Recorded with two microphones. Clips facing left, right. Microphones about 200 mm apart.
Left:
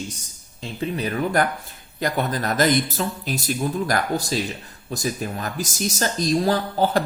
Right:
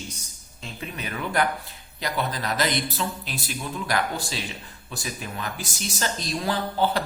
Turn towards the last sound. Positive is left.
turn(degrees=45)  # may be behind; listen again after turning